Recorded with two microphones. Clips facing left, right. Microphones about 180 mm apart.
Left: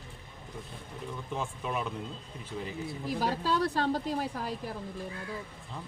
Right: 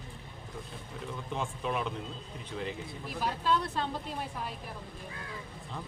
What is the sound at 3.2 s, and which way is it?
Speech, 40° left (ahead or behind).